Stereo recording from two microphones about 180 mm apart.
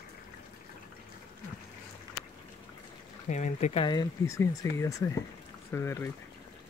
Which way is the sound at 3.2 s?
40° left (ahead or behind).